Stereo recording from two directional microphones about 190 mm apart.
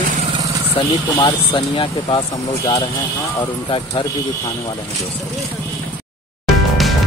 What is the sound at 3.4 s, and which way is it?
Speech, 25° left (ahead or behind).